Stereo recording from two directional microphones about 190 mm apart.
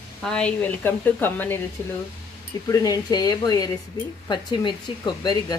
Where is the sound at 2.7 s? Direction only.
20° left (ahead or behind).